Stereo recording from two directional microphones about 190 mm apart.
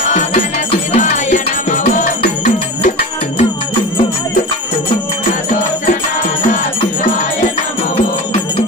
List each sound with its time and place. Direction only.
0.9 s music: 40° left (ahead or behind)